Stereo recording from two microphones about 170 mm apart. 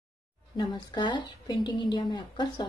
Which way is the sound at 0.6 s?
25° left (ahead or behind).